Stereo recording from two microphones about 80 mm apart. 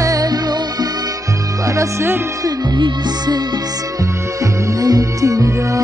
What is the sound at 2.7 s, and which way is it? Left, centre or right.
Music, right.